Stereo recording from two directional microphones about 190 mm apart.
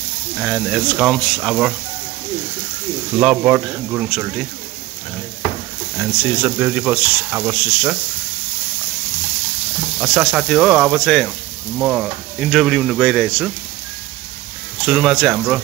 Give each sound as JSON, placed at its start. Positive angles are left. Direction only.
{"t": 0.4, "sound": "speech", "side_deg": 0}
{"t": 3.2, "sound": "speech", "side_deg": -5}
{"t": 5.9, "sound": "speech", "side_deg": -5}
{"t": 9.9, "sound": "speech", "side_deg": 0}
{"t": 14.9, "sound": "speech", "side_deg": 0}